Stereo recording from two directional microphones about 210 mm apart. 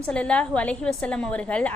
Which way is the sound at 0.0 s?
5° left (ahead or behind).